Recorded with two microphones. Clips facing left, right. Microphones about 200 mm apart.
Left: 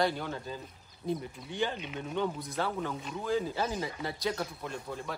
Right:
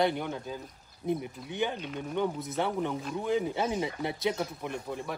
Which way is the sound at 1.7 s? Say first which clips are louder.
Right 2 dB; 5° left (ahead or behind).